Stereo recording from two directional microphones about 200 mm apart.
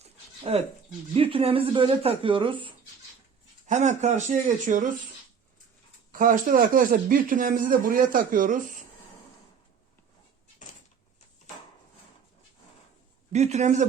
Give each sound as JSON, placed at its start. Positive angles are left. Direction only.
{"t": 0.0, "sound": "dog", "side_deg": -30}
{"t": 1.1, "sound": "speech", "side_deg": -25}
{"t": 3.7, "sound": "speech", "side_deg": -35}
{"t": 6.1, "sound": "speech", "side_deg": -45}
{"t": 13.3, "sound": "speech", "side_deg": -35}